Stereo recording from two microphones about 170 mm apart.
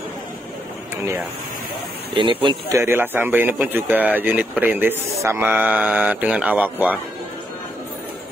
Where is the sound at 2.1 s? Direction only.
30° right (ahead or behind).